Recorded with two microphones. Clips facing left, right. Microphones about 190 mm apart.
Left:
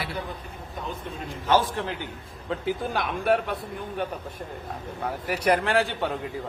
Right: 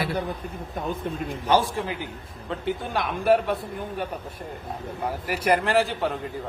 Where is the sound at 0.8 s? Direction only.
50° right (ahead or behind).